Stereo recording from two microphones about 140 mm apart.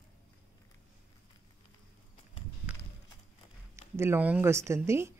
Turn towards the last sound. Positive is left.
turn(degrees=-20)  # may be behind; listen again after turning